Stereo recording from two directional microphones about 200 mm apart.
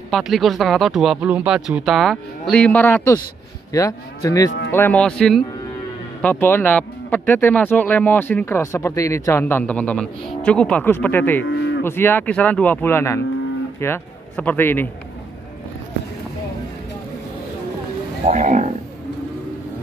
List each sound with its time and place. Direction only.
0.1 s speech: centre (ahead or behind)
11.4 s cattle: 60° left (ahead or behind)
11.8 s a man's voice: 10° left (ahead or behind)
18.2 s speech: 40° right (ahead or behind)